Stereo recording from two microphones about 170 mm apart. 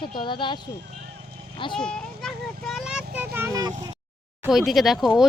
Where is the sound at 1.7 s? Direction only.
5° left (ahead or behind); by 3.7 s 20° right (ahead or behind).